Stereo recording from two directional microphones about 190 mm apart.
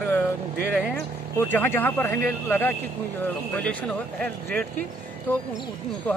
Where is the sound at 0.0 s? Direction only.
10° left (ahead or behind).